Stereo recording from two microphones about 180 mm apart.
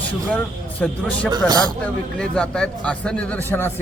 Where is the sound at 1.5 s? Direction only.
20° right (ahead or behind).